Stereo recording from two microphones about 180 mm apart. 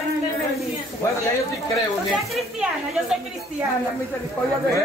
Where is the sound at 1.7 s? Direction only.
Centre (ahead or behind).